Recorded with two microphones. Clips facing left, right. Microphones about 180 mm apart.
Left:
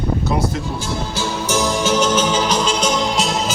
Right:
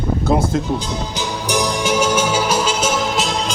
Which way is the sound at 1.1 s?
15° right (ahead or behind).